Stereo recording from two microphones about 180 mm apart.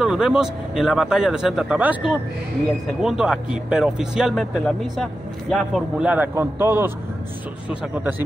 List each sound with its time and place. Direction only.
0.0 s a man's voice: 5° right (ahead or behind)